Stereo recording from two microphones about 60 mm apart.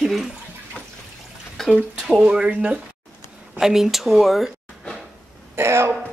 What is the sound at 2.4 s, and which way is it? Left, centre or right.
Speech, right.